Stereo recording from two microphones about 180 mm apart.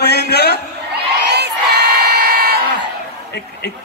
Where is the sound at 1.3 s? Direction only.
65° right (ahead or behind).